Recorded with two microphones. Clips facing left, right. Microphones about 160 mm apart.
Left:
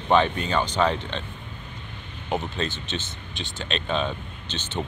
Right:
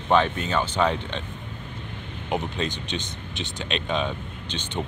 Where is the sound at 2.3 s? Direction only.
15° right (ahead or behind).